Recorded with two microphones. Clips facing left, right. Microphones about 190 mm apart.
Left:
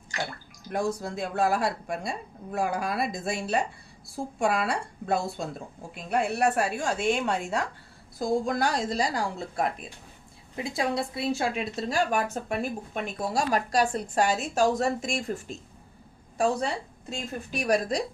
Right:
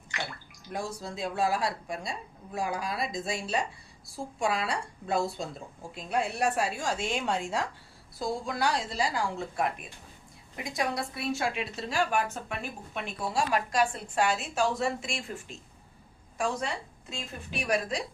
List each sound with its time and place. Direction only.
0.1 s speech: 40° left (ahead or behind)
0.7 s a woman's voice: 55° left (ahead or behind)
8.2 s speech: 50° left (ahead or behind)
10.6 s a woman's voice: 25° left (ahead or behind)
11.5 s speech: 40° left (ahead or behind)